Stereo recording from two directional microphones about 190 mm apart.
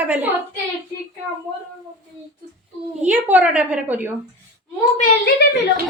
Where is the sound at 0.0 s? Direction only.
10° right (ahead or behind).